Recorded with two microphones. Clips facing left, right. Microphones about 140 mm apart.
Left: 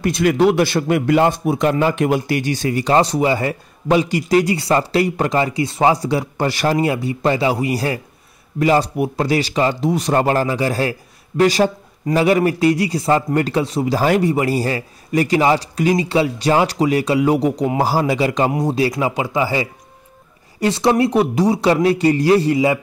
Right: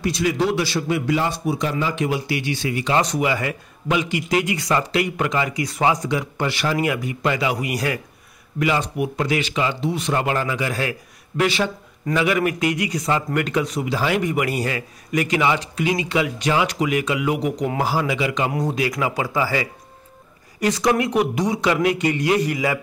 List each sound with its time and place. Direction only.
0.0 s speech: 55° left (ahead or behind); by 22.8 s 25° left (ahead or behind)